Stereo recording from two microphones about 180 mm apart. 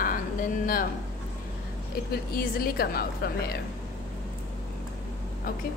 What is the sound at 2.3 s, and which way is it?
A woman's voice, 55° left (ahead or behind).